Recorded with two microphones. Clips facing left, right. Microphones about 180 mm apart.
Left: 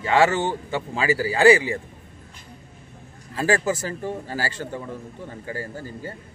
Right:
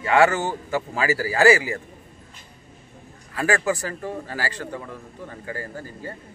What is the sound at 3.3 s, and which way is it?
A man's voice, 25° left (ahead or behind).